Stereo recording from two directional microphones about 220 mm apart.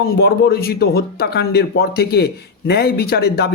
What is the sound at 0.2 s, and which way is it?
Speech, 45° left (ahead or behind).